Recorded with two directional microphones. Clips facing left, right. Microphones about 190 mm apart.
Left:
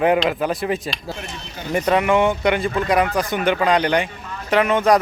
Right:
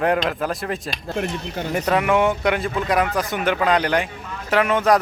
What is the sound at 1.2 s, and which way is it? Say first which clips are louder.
Speech: right 8 dB; 60° right (ahead or behind).